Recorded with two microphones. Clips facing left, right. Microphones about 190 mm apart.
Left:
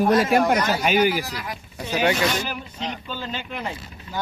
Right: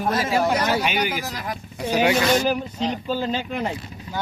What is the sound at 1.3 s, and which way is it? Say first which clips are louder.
Speech: right 2 dB; 40° right (ahead or behind).